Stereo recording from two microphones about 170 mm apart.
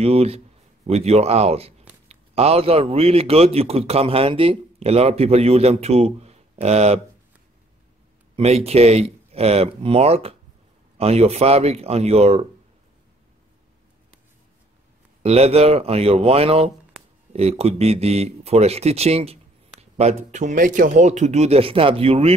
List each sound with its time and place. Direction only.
0.0 s a man's voice: 35° right (ahead or behind)
8.4 s a man's voice: 40° right (ahead or behind)
15.2 s a man's voice: 35° right (ahead or behind)